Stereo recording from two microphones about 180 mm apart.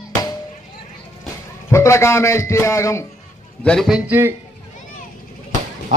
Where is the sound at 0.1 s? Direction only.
20° left (ahead or behind).